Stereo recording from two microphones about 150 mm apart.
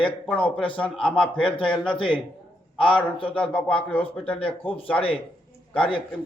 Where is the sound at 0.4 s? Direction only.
10° left (ahead or behind).